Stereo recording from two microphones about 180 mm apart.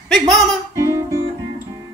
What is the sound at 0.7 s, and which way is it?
Guitar, 15° right (ahead or behind).